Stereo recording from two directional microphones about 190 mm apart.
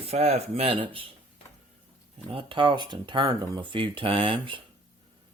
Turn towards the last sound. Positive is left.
turn(degrees=-25)  # may be behind; listen again after turning